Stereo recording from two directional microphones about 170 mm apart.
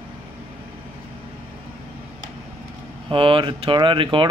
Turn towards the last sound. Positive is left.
turn(degrees=-30)  # may be behind; listen again after turning